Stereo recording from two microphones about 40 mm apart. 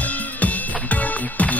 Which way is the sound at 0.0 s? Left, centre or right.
Left.